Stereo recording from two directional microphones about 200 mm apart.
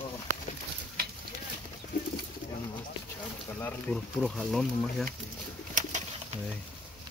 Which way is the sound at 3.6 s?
10° left (ahead or behind).